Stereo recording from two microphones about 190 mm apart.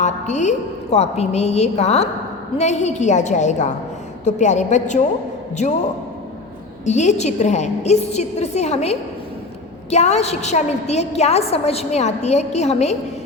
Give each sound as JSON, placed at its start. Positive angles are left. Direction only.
{"t": 0.0, "sound": "a woman's voice", "side_deg": 40}
{"t": 6.8, "sound": "a woman's voice", "side_deg": 40}